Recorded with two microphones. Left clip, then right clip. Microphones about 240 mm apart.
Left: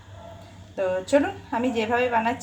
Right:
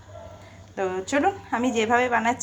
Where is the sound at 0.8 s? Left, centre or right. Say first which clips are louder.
Left 3 dB; centre.